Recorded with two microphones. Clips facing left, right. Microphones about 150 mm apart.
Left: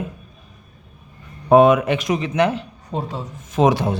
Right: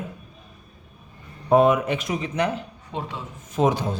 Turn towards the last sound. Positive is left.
turn(degrees=80)